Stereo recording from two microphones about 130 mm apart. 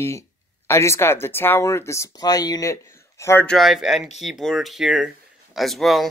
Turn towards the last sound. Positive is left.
turn(degrees=0)  # may be behind; listen again after turning